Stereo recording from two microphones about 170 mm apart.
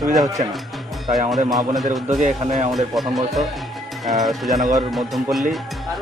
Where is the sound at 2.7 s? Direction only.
Centre (ahead or behind).